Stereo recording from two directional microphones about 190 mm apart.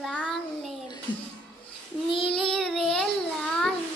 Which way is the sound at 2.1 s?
30° left (ahead or behind).